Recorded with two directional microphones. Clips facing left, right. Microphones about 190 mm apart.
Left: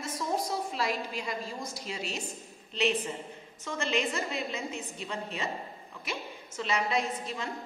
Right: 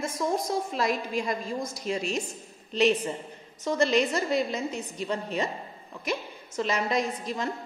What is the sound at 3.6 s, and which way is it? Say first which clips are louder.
A woman's voice: right 7 dB; 40° right (ahead or behind).